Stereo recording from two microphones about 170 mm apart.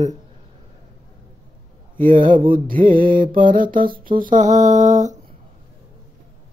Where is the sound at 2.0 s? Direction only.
50° right (ahead or behind).